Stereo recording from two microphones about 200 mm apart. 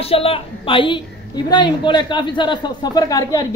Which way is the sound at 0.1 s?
30° left (ahead or behind).